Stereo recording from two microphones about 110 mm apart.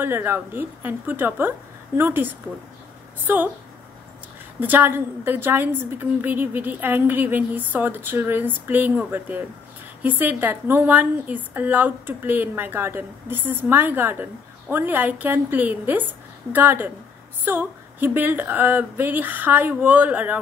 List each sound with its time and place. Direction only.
0.0 s a woman's voice: 20° right (ahead or behind)
4.6 s a woman's voice: 15° right (ahead or behind)